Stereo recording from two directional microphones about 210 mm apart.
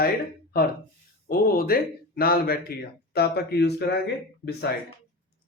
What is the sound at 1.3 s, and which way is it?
Speech, 45° left (ahead or behind).